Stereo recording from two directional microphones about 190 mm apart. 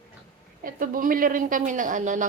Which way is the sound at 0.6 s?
45° right (ahead or behind).